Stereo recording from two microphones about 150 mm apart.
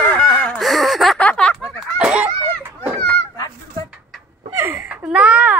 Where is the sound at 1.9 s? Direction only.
10° right (ahead or behind).